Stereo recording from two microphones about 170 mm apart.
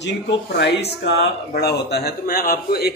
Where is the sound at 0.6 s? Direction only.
90° left.